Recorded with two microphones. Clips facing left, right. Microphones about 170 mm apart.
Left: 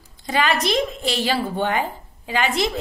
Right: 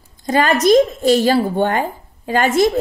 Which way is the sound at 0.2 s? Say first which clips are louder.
Right 6 dB; 45° right (ahead or behind).